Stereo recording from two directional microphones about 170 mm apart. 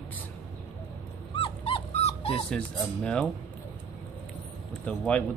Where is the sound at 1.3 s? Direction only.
30° left (ahead or behind).